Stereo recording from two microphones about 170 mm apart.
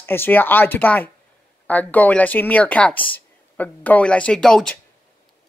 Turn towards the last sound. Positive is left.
turn(degrees=5)  # may be behind; listen again after turning